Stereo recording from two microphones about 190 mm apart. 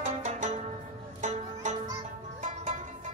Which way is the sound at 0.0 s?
40° right (ahead or behind).